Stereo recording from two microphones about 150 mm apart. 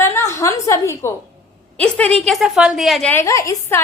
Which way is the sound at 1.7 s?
10° left (ahead or behind).